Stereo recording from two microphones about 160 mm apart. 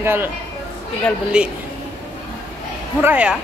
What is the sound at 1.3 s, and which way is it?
Speech, 5° right (ahead or behind).